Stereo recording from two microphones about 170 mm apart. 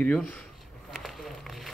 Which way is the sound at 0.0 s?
5° left (ahead or behind).